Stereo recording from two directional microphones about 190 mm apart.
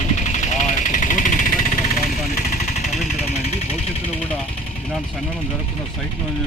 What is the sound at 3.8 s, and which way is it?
Speech, 35° left (ahead or behind).